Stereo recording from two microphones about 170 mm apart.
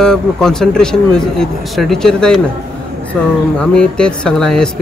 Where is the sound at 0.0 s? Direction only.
5° left (ahead or behind).